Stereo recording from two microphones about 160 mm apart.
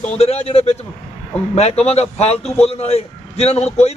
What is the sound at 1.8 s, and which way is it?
A man's voice, 40° left (ahead or behind).